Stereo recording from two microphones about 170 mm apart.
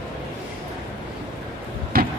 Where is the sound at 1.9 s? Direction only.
60° right (ahead or behind).